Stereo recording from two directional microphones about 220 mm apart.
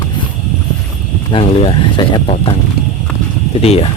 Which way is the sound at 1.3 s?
25° left (ahead or behind).